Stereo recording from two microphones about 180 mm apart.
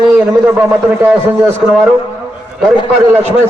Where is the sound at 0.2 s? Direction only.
10° right (ahead or behind).